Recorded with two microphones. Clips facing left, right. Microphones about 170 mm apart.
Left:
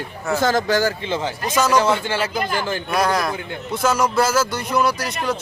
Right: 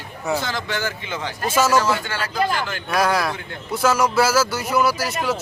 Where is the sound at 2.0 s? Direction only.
25° left (ahead or behind).